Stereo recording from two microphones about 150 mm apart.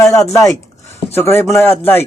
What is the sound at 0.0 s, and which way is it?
A man's voice, 20° left (ahead or behind).